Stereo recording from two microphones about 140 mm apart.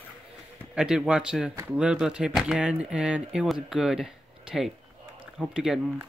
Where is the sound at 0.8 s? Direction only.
5° right (ahead or behind).